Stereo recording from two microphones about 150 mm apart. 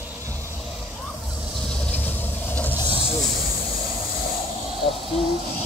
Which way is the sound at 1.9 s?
10° left (ahead or behind).